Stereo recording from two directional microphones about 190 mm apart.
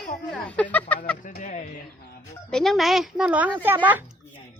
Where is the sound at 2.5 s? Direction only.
Centre (ahead or behind).